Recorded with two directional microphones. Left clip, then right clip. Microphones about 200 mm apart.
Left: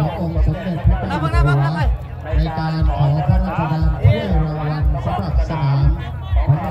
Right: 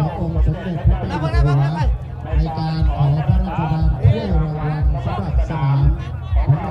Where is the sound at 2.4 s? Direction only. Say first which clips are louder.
Left 1 dB; 20° left (ahead or behind).